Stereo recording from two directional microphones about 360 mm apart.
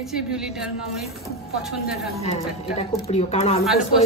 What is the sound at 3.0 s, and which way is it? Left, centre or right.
Speech, centre.